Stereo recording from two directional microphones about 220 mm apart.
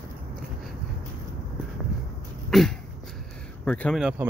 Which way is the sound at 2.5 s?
Centre (ahead or behind).